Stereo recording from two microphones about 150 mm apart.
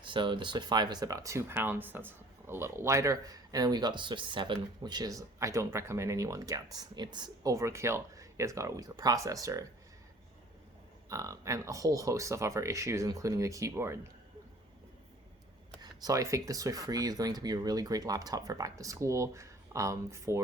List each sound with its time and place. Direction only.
0.0 s speech: 35° right (ahead or behind)
11.1 s speech: 20° right (ahead or behind)
15.8 s speech: 25° right (ahead or behind)